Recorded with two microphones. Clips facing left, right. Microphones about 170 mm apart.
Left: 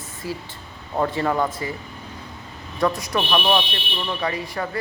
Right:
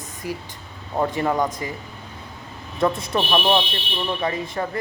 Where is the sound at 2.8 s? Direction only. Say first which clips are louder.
Right 1 dB; 25° right (ahead or behind).